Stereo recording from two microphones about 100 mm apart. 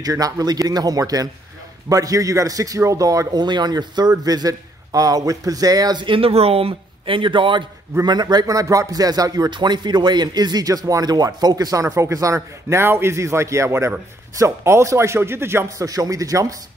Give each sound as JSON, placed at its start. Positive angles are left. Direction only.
{"t": 0.0, "sound": "a man's voice", "side_deg": -40}
{"t": 8.0, "sound": "a man's voice", "side_deg": -45}
{"t": 15.9, "sound": "a man's voice", "side_deg": -35}